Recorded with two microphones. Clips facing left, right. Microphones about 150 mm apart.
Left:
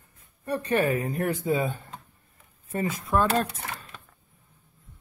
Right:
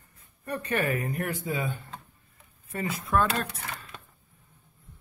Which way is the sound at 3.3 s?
40° left (ahead or behind).